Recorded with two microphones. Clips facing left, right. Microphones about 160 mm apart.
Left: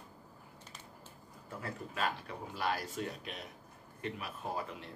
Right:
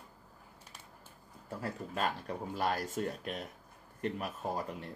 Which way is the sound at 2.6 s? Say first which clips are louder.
Right 2 dB; 45° right (ahead or behind).